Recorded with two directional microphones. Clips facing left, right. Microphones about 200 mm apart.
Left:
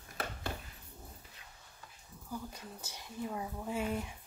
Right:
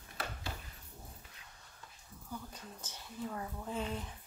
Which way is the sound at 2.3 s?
10° left (ahead or behind).